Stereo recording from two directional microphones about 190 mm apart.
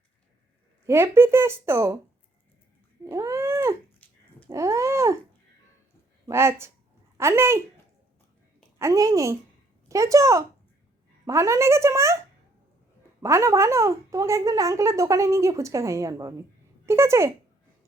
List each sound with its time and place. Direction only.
0.9 s speech: 15° right (ahead or behind)
3.0 s cat: 15° right (ahead or behind)
4.0 s a sound: 10° left (ahead or behind)
4.4 s speech: 15° right (ahead or behind)
6.2 s speech: 15° right (ahead or behind)
8.8 s speech: 15° right (ahead or behind)
13.2 s speech: 15° right (ahead or behind)